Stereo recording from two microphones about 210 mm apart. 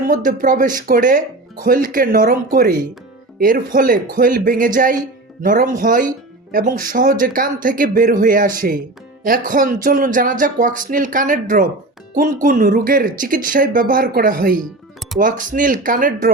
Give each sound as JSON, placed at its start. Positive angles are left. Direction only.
{"t": 0.1, "sound": "speech", "side_deg": -40}